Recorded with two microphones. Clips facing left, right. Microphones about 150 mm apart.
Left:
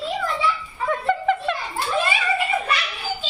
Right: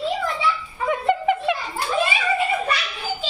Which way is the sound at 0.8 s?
15° right (ahead or behind).